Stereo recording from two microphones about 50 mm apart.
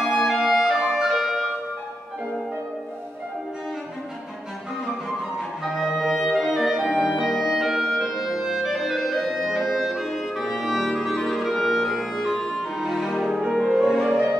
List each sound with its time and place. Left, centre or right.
0.0 s music: centre
5.6 s clarinet: centre
13.7 s music: centre
14.1 s music: right